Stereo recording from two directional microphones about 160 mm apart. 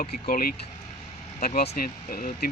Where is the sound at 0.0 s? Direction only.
65° left (ahead or behind).